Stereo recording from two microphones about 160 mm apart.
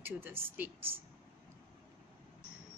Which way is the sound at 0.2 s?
10° right (ahead or behind).